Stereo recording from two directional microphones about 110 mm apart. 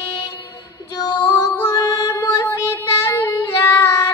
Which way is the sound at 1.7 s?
35° left (ahead or behind).